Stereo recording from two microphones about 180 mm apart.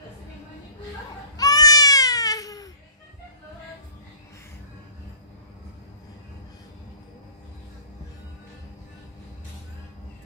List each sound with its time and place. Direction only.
1.3 s baby cry: 20° left (ahead or behind)